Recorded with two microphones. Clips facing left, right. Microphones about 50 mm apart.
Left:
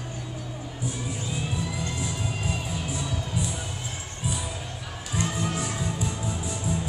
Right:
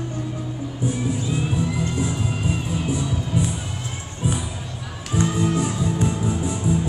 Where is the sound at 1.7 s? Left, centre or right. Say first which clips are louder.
Right 7 dB; centre.